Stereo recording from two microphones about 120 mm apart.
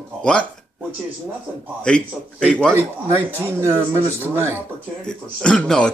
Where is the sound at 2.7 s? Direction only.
20° right (ahead or behind).